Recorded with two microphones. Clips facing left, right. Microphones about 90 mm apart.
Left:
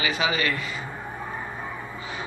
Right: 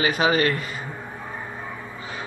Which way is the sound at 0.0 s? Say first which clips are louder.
Right 5 dB; 45° right (ahead or behind).